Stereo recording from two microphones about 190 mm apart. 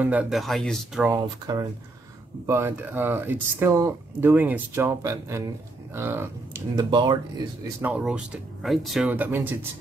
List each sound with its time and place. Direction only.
0.0 s speech: 5° right (ahead or behind)
1.1 s speech: 20° right (ahead or behind)
7.8 s speech: 5° right (ahead or behind)